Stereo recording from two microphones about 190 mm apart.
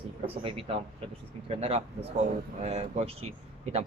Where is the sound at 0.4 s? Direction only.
30° right (ahead or behind).